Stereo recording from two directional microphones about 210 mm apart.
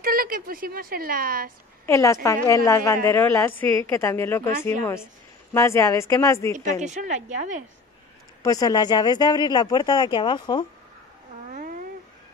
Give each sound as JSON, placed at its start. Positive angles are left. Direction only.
{"t": 0.0, "sound": "a woman's voice", "side_deg": -45}
{"t": 1.9, "sound": "a woman's voice", "side_deg": 15}
{"t": 6.8, "sound": "a woman's voice", "side_deg": -35}
{"t": 8.4, "sound": "speech", "side_deg": 15}